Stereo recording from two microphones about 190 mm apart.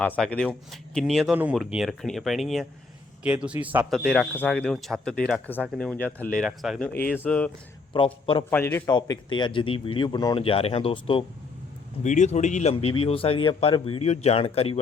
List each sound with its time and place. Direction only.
0.0 s a man's voice: 5° left (ahead or behind)
7.9 s speech: 25° left (ahead or behind)
8.4 s a man's voice: 10° left (ahead or behind)
9.0 s speech: 25° left (ahead or behind)
12.0 s speech: 40° left (ahead or behind)